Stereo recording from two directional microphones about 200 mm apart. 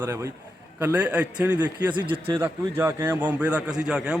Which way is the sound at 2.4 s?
10° right (ahead or behind).